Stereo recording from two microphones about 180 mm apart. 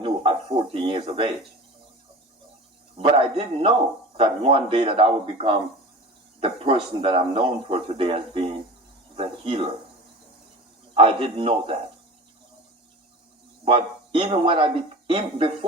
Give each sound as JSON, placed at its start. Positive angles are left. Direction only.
{"t": 0.0, "sound": "speech", "side_deg": -30}
{"t": 3.0, "sound": "a man's voice", "side_deg": -30}
{"t": 10.9, "sound": "a man's voice", "side_deg": -30}
{"t": 13.7, "sound": "a man's voice", "side_deg": -30}